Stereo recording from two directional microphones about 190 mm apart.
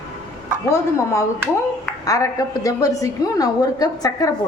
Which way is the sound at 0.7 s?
15° left (ahead or behind).